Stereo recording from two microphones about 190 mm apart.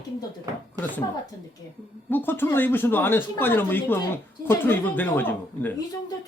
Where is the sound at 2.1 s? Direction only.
10° left (ahead or behind).